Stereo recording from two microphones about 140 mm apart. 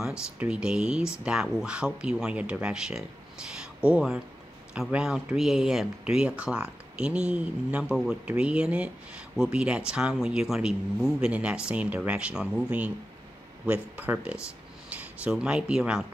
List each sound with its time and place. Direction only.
0.0 s speech: 5° right (ahead or behind)